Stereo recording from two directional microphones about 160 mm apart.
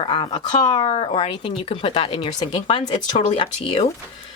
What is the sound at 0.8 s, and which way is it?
Speech, 35° left (ahead or behind).